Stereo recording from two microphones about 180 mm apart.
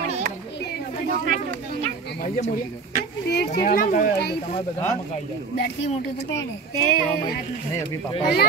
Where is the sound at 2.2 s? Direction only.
45° left (ahead or behind).